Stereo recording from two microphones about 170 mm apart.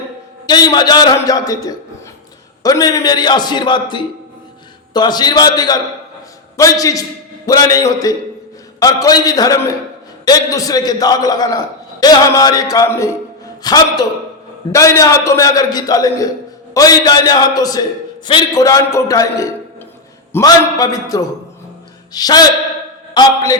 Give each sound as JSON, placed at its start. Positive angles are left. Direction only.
{"t": 0.4, "sound": "a man's voice", "side_deg": 25}